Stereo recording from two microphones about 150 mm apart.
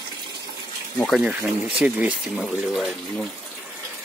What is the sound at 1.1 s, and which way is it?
Speech, 5° right (ahead or behind).